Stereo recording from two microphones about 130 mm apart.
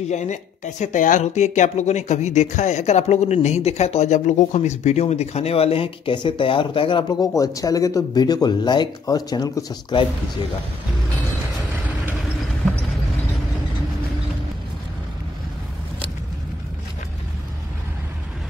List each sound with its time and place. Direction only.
0.1 s speech: 65° left (ahead or behind); by 10.0 s 30° left (ahead or behind)